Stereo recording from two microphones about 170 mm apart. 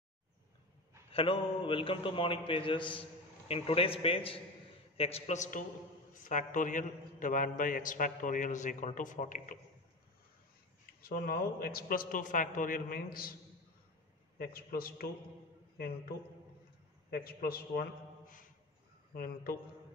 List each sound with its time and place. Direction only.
1.1 s a man's voice: 35° left (ahead or behind); by 9.6 s 50° left (ahead or behind)
11.0 s a man's voice: 60° left (ahead or behind)
14.4 s a man's voice: 60° left (ahead or behind)
17.1 s a man's voice: 60° left (ahead or behind)